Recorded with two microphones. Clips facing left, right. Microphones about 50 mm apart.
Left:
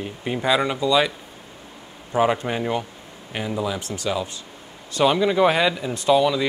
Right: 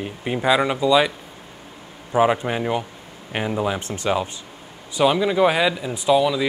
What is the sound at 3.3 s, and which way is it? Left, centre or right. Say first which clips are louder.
Speech: right 3 dB; right.